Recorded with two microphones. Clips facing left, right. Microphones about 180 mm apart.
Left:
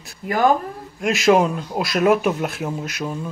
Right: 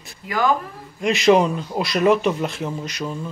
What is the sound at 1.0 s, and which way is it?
Speech, centre (ahead or behind).